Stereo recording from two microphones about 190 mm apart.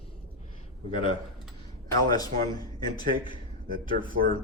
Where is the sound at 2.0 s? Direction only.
20° left (ahead or behind).